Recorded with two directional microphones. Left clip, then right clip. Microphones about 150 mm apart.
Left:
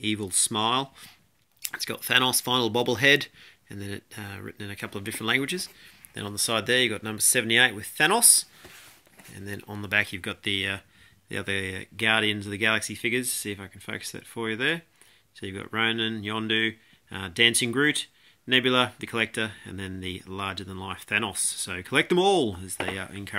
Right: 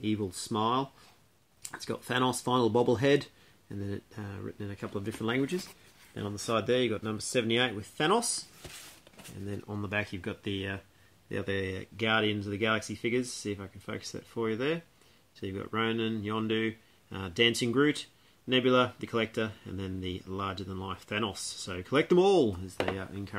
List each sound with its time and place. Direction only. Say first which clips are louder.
0.0 s speech: left 5 dB; 10° left (ahead or behind)
1.6 s speech: left 5 dB; 5° right (ahead or behind)
9.8 s speech: left 9 dB; 5° left (ahead or behind)